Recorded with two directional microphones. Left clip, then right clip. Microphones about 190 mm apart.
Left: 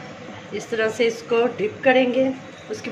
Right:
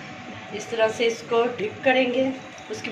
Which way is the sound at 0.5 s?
45° left (ahead or behind).